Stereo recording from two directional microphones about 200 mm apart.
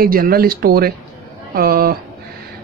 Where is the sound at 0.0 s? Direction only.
50° right (ahead or behind).